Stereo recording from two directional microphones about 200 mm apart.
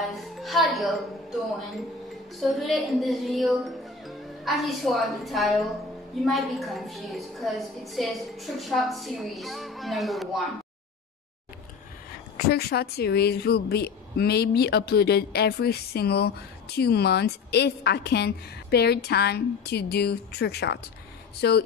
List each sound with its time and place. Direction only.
0.0 s a woman's voice: centre (ahead or behind)
2.4 s a woman's voice: centre (ahead or behind)
12.4 s speech: 50° left (ahead or behind)